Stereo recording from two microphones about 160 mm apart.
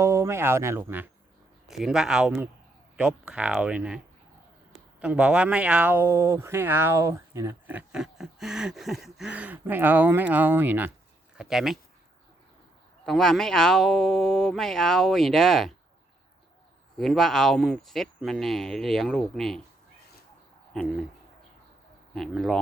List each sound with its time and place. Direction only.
0.0 s speech: 20° right (ahead or behind); by 11.8 s centre (ahead or behind)
13.1 s speech: centre (ahead or behind)
17.0 s speech: centre (ahead or behind)
20.7 s speech: centre (ahead or behind)
22.1 s speech: centre (ahead or behind)